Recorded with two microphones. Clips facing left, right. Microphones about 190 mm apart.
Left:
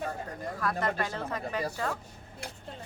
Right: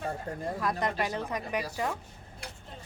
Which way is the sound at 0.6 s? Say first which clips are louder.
Left 1 dB; 20° right (ahead or behind).